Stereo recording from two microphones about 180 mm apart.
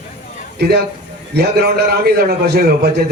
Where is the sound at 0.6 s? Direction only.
65° right (ahead or behind).